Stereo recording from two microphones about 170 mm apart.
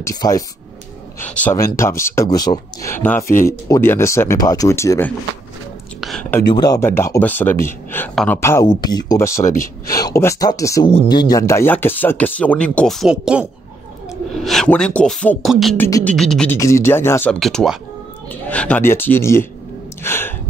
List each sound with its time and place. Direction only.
0.0 s speech: 20° left (ahead or behind)
5.9 s a sound: centre (ahead or behind)
6.5 s speech: 25° left (ahead or behind)
8.1 s speech: centre (ahead or behind)
8.4 s speech: 15° left (ahead or behind)
9.4 s speech: 50° left (ahead or behind)
9.9 s speech: 20° left (ahead or behind); by 15.7 s centre (ahead or behind)
15.8 s speech: 10° left (ahead or behind)
16.5 s speech: 15° left (ahead or behind)